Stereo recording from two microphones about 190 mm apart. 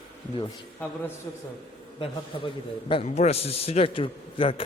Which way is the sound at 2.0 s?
30° left (ahead or behind).